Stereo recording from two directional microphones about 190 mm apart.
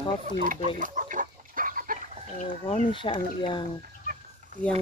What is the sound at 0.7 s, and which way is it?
Chicken, 45° right (ahead or behind).